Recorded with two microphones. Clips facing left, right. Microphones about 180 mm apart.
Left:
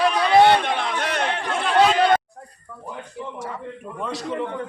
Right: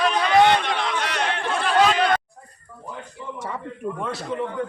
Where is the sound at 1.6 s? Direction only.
25° left (ahead or behind).